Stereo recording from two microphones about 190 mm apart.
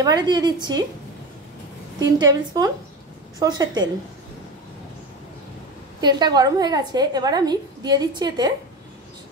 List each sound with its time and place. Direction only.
0.0 s a woman's voice: 20° right (ahead or behind)
2.0 s a woman's voice: 20° right (ahead or behind)
5.9 s a woman's voice: 20° right (ahead or behind)